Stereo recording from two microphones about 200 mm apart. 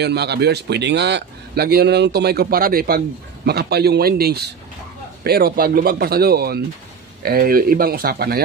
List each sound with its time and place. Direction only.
0.0 s speech: 55° right (ahead or behind)